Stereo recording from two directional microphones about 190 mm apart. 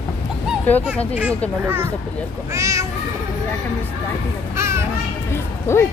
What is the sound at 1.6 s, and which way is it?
Speech, 10° right (ahead or behind).